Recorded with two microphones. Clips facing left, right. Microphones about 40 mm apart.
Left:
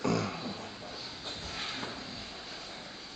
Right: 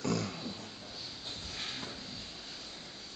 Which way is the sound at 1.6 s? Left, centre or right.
Centre.